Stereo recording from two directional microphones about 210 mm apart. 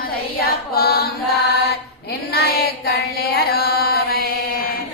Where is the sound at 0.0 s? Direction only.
45° left (ahead or behind).